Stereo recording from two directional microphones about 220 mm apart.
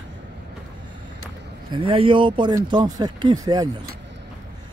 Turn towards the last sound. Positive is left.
turn(degrees=-15)  # may be behind; listen again after turning